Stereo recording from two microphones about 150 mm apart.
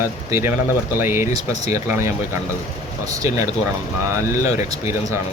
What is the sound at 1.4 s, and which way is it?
Speech, 45° left (ahead or behind).